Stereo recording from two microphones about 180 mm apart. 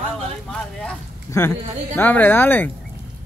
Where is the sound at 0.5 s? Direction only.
5° left (ahead or behind).